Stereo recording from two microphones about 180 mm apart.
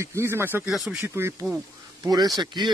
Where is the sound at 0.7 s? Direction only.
Centre (ahead or behind).